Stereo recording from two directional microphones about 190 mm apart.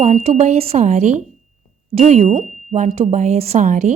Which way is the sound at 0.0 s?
35° right (ahead or behind).